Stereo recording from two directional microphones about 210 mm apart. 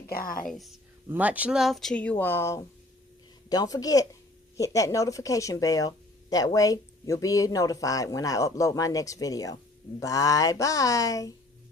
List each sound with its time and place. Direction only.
0.1 s a woman's voice: 45° left (ahead or behind)
0.4 s speech: centre (ahead or behind); by 11.3 s 15° left (ahead or behind)